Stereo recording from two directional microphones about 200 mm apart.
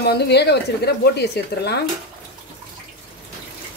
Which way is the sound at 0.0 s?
55° left (ahead or behind).